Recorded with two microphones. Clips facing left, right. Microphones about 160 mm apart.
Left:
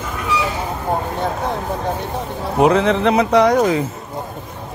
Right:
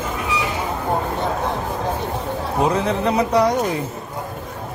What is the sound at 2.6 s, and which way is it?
Speech, 80° left.